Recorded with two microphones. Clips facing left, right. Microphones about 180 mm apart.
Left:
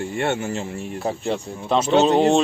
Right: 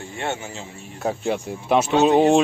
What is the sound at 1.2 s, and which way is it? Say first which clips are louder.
Speech: right 3 dB; 10° right (ahead or behind).